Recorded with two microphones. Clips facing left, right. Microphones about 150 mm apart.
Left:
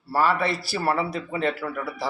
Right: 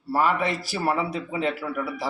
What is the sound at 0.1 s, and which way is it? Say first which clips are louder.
Speech: even; 15° right (ahead or behind).